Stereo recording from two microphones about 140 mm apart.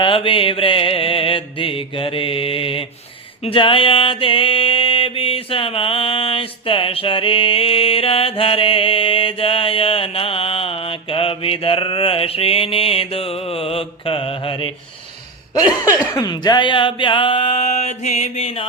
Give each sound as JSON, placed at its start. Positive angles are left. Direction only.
{"t": 0.0, "sound": "mantra", "side_deg": 40}
{"t": 16.1, "sound": "mantra", "side_deg": 30}